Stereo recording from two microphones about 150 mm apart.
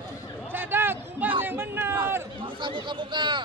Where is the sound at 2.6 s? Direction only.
30° right (ahead or behind).